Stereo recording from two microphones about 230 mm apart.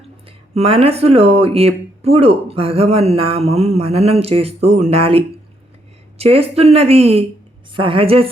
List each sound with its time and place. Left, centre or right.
0.5 s speech: right